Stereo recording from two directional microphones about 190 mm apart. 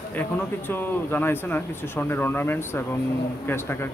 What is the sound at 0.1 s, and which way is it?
Speech, 10° left (ahead or behind).